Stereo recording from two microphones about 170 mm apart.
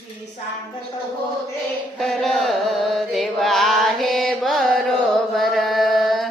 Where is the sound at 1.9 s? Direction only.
Centre (ahead or behind).